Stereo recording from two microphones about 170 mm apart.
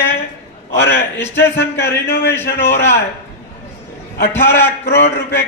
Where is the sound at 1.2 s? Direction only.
15° left (ahead or behind).